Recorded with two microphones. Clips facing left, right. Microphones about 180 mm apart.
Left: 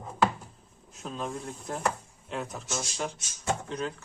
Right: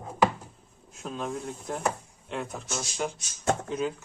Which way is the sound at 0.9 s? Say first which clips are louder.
Right 2 dB; centre (ahead or behind).